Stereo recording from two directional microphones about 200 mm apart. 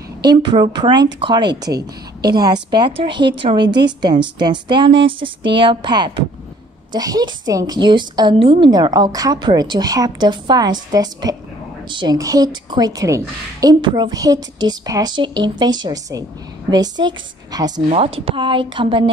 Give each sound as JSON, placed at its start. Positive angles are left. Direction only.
{"t": 0.4, "sound": "a woman's voice", "side_deg": -25}